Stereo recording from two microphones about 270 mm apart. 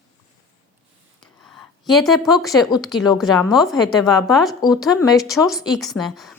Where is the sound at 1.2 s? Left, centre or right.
Centre.